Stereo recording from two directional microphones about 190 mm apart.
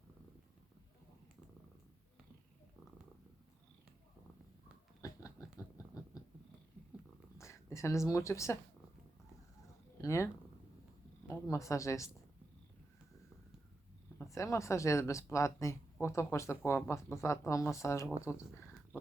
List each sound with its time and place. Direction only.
5.0 s a sound: 15° left (ahead or behind)
7.3 s speech: 15° left (ahead or behind)
10.0 s cat: 15° left (ahead or behind)
11.3 s speech: 15° left (ahead or behind)
14.2 s speech: 15° left (ahead or behind)
18.3 s a sound: 15° left (ahead or behind)